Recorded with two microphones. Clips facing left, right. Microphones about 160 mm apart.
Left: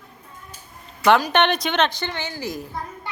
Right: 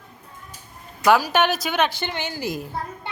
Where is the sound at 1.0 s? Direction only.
5° right (ahead or behind).